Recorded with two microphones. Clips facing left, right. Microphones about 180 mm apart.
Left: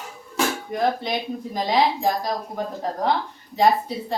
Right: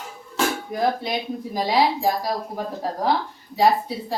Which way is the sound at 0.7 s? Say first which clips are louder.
Even; 5° right (ahead or behind).